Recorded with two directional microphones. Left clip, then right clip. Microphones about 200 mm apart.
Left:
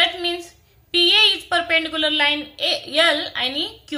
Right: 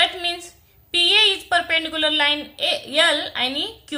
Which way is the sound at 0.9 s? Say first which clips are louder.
Left 1 dB; 15° right (ahead or behind).